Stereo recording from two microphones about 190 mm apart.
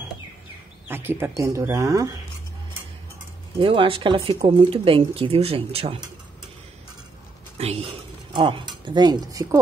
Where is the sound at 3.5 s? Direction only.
30° right (ahead or behind).